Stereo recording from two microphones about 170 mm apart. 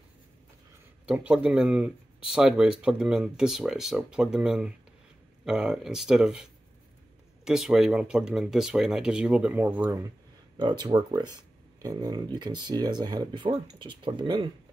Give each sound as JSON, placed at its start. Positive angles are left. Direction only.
{"t": 1.0, "sound": "speech", "side_deg": -5}
{"t": 10.6, "sound": "speech", "side_deg": -25}